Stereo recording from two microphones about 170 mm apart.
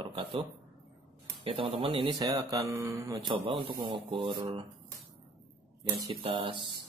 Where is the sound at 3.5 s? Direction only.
30° right (ahead or behind).